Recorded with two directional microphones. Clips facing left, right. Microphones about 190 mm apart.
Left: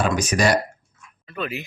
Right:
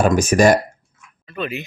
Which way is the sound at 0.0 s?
45° right (ahead or behind).